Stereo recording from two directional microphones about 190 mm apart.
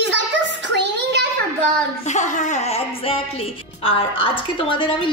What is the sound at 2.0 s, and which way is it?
A woman's voice, 40° left (ahead or behind).